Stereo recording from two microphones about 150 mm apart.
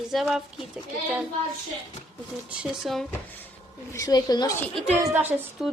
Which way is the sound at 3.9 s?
25° left (ahead or behind).